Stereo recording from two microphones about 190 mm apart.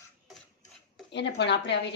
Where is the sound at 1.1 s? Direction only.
65° left (ahead or behind).